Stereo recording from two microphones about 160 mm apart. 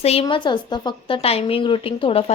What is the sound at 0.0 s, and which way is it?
A woman's voice, 40° left (ahead or behind).